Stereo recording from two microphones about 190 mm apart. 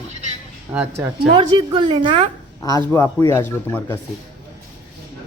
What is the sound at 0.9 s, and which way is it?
A woman's voice, 25° right (ahead or behind).